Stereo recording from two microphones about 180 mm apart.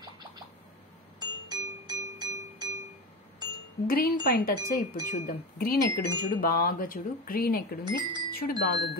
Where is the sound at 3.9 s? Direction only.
55° left (ahead or behind).